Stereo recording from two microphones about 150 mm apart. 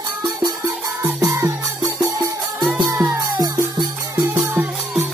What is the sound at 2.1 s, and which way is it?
Music, 25° right (ahead or behind).